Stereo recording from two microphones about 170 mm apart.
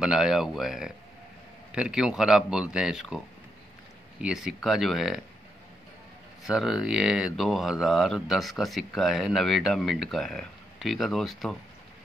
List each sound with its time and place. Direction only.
0.0 s speech: 5° right (ahead or behind)
4.2 s speech: 5° right (ahead or behind)
6.4 s speech: centre (ahead or behind)